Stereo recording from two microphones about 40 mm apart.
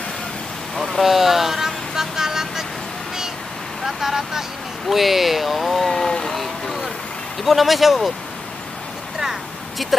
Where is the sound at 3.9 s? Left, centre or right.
Centre.